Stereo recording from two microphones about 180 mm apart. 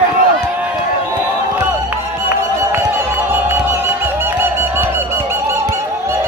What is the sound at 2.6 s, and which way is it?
Music, 10° right (ahead or behind).